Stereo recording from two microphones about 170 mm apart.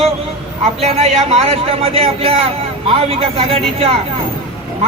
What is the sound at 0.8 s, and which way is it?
A woman's voice, 35° right (ahead or behind).